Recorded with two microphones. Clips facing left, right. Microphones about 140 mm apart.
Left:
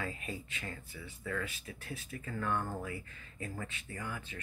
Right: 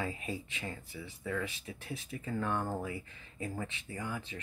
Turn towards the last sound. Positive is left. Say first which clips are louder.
# right 3 dB
turn(degrees=-20)  # may be behind; listen again after turning